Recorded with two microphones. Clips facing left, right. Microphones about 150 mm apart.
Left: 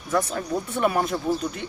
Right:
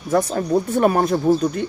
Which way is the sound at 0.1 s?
35° right (ahead or behind).